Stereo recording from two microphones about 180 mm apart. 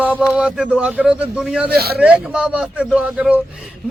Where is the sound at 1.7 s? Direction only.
60° right (ahead or behind).